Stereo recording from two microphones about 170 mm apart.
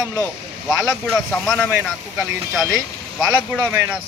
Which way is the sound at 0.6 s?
Centre (ahead or behind).